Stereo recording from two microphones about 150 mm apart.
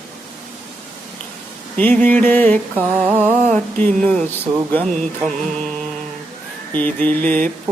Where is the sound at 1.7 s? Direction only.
10° left (ahead or behind).